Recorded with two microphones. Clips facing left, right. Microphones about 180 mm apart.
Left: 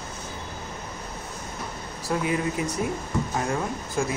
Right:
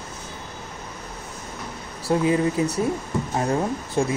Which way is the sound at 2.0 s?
30° right (ahead or behind).